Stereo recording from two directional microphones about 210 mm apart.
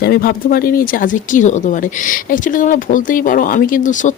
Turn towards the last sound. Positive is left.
turn(degrees=35)  # may be behind; listen again after turning